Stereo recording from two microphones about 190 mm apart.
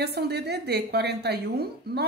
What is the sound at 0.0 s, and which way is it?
A woman's voice, 60° right (ahead or behind).